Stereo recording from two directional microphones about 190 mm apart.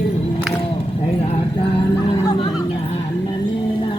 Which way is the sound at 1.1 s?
30° left (ahead or behind).